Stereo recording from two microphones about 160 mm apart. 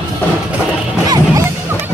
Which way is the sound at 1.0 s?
25° right (ahead or behind).